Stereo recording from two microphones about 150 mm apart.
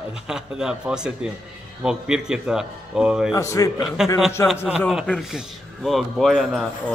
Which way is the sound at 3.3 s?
20° left (ahead or behind).